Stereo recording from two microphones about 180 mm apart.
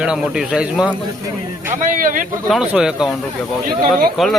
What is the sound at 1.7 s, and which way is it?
Speech, 50° right (ahead or behind).